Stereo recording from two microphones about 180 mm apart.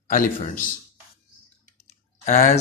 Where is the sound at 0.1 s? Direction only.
45° left (ahead or behind).